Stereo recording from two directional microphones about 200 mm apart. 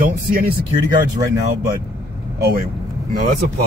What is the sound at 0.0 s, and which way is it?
Speech, 45° right (ahead or behind).